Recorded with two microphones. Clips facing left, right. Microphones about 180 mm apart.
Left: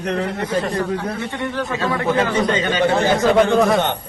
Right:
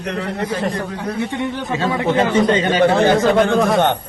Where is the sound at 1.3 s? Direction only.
15° right (ahead or behind); by 3.0 s 30° right (ahead or behind).